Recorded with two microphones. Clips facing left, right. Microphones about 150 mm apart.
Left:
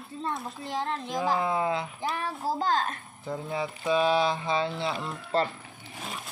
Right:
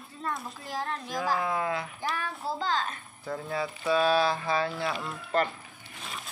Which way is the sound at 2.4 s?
45° left (ahead or behind).